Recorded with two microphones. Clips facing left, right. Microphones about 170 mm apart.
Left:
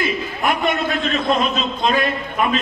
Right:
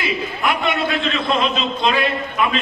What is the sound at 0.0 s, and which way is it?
A man's voice, 45° left (ahead or behind).